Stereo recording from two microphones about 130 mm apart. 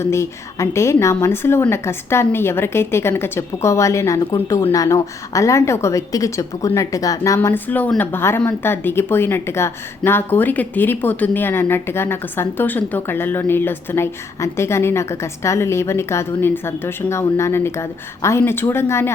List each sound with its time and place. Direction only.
0.0 s a woman's voice: 20° left (ahead or behind)
7.3 s a woman's voice: 15° left (ahead or behind)